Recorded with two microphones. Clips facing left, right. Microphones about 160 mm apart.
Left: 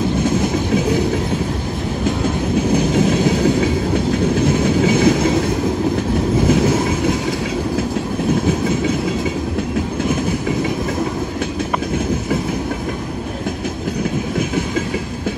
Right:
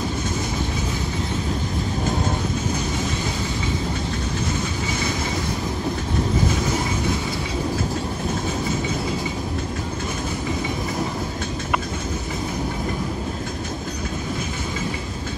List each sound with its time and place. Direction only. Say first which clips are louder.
3.1 s train: left 12 dB; 75° left (ahead or behind)
4.5 s train: left 11 dB; 60° left (ahead or behind)